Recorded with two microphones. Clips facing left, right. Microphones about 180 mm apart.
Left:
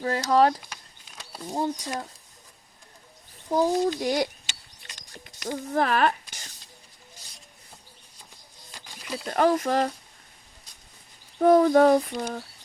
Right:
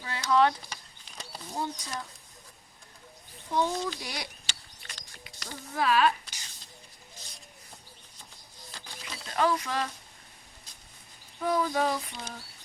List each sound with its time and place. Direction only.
0.0 s speech: 40° left (ahead or behind)
3.5 s speech: 40° left (ahead or behind)
5.7 s speech: 50° left (ahead or behind)
8.7 s a sound: 15° left (ahead or behind)
9.2 s speech: 45° left (ahead or behind)
11.3 s speech: 55° left (ahead or behind)